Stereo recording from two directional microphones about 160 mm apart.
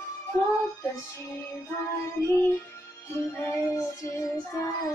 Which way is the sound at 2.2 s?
15° left (ahead or behind).